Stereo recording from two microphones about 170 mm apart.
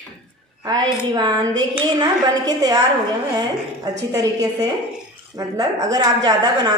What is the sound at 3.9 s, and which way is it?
A woman's voice, 20° right (ahead or behind).